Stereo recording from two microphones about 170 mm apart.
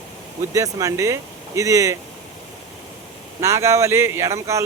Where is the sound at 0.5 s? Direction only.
20° right (ahead or behind).